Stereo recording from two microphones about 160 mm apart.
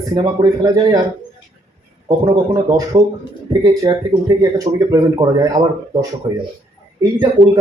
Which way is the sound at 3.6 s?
20° right (ahead or behind).